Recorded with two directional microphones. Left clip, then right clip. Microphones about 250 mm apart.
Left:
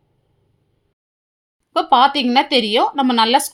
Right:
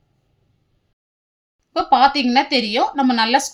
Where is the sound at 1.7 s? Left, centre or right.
Centre.